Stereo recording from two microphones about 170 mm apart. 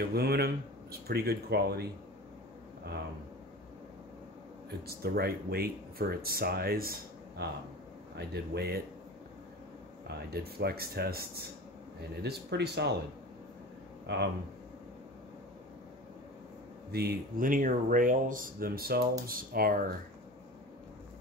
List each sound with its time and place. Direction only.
0.0 s speech: 65° right (ahead or behind)
4.6 s speech: 65° right (ahead or behind)
8.5 s speech: 70° right (ahead or behind)
10.0 s speech: 70° right (ahead or behind)
14.0 s speech: 85° right
16.9 s speech: 60° right (ahead or behind)